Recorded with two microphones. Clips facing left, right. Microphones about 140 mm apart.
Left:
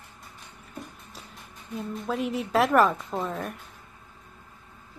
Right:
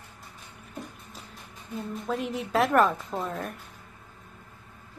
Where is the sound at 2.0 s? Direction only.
Centre (ahead or behind).